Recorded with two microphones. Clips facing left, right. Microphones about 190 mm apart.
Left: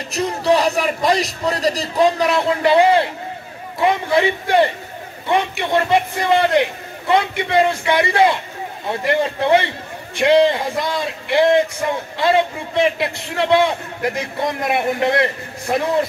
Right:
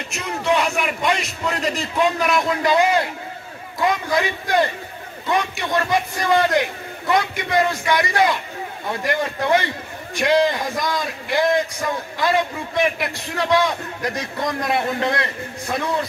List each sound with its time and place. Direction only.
0.1 s a man's voice: 35° left (ahead or behind)